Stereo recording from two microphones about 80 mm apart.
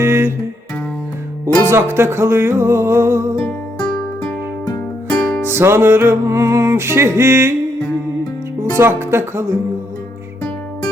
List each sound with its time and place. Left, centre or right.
0.0 s music: right
1.7 s music: right
3.8 s music: centre
5.4 s music: right
8.7 s music: right